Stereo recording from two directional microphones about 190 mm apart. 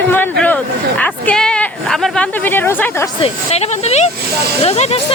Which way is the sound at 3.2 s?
35° left (ahead or behind).